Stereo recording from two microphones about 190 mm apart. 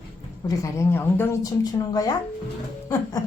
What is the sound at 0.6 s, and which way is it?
Speech, 10° left (ahead or behind).